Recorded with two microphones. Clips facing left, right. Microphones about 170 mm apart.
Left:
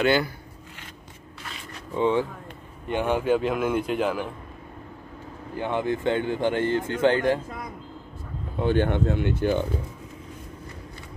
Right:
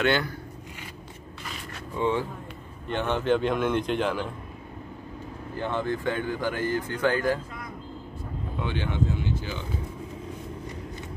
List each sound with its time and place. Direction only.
0.0 s speech: 5° left (ahead or behind)
2.0 s a man's voice: 15° left (ahead or behind)
5.6 s speech: 15° left (ahead or behind)
8.5 s speech: 45° left (ahead or behind)